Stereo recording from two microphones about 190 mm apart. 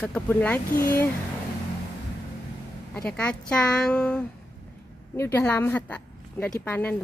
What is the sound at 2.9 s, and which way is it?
Speech, 5° left (ahead or behind).